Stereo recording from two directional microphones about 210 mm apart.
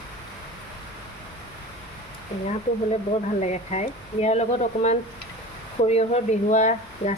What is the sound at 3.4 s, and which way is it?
Speech, 35° left (ahead or behind).